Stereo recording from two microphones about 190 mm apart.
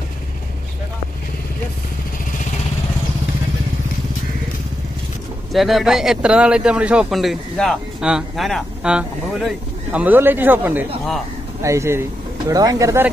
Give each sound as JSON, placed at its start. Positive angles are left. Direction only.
{"t": 5.5, "sound": "speech", "side_deg": 0}